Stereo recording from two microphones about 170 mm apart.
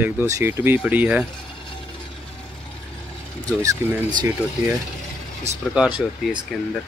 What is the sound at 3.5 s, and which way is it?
Speech, 20° right (ahead or behind).